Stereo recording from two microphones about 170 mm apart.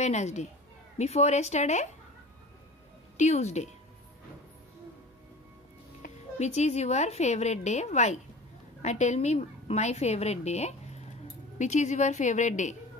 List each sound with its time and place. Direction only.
0.0 s a woman's voice: 40° left (ahead or behind)
3.2 s a woman's voice: 40° left (ahead or behind)
6.0 s a woman's voice: 40° left (ahead or behind)